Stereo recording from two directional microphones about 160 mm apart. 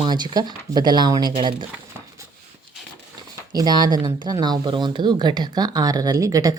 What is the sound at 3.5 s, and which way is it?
Speech, 25° right (ahead or behind).